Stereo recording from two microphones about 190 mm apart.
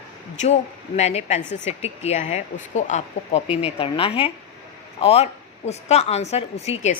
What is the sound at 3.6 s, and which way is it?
A woman's voice, 30° left (ahead or behind).